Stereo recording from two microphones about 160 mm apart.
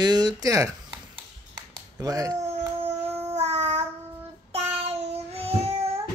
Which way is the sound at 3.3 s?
40° right (ahead or behind).